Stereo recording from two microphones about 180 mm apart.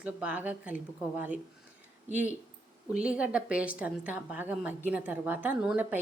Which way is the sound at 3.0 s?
5° right (ahead or behind).